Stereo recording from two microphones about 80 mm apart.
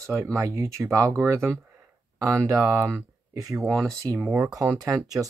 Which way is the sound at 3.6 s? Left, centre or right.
Centre.